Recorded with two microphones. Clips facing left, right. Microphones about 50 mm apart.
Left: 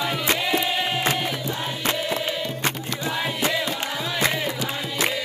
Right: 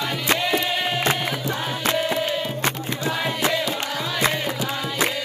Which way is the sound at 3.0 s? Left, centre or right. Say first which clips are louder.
Even; centre.